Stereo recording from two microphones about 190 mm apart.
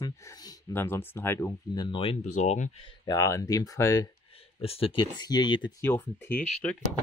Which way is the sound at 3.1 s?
15° left (ahead or behind).